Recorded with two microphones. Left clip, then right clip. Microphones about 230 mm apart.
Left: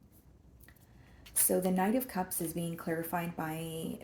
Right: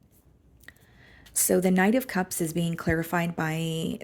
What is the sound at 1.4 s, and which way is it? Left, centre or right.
Speech, right.